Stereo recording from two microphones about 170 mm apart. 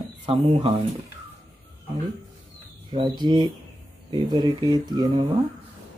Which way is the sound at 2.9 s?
25° right (ahead or behind).